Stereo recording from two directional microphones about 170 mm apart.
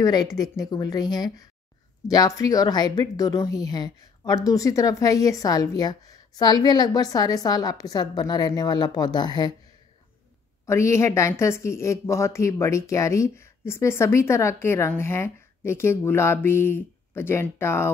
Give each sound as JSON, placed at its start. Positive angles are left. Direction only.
{"t": 0.0, "sound": "a woman's voice", "side_deg": 20}
{"t": 10.7, "sound": "a woman's voice", "side_deg": 15}